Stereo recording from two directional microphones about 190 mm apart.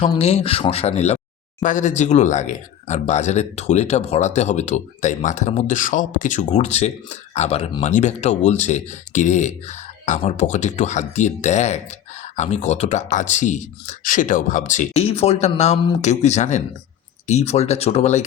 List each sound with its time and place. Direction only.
0.0 s speech: 30° left (ahead or behind)